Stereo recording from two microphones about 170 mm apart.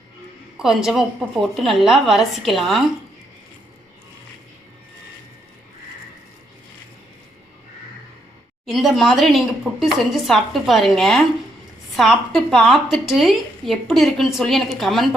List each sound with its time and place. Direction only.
0.5 s a woman's voice: centre (ahead or behind)
8.6 s a woman's voice: centre (ahead or behind)